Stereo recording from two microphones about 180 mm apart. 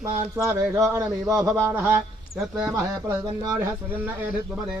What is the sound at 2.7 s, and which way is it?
Speech, 15° right (ahead or behind).